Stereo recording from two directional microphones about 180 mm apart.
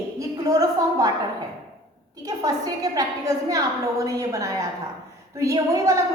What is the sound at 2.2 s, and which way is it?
A woman's voice, 20° right (ahead or behind).